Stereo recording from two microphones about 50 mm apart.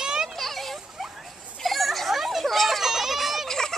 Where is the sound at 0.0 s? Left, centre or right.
Centre.